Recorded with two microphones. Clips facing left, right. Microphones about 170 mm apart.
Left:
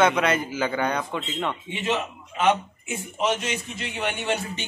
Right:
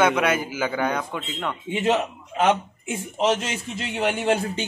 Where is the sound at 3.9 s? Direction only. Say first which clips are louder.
Right 6 dB; 35° right (ahead or behind).